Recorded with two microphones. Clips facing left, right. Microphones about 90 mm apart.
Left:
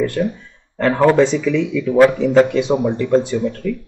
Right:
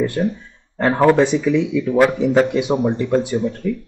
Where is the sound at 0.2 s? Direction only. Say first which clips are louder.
Even; 30° right (ahead or behind).